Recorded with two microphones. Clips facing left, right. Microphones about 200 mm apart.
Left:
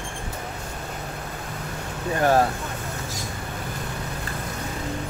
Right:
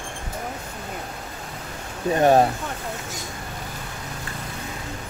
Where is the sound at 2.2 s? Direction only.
20° right (ahead or behind).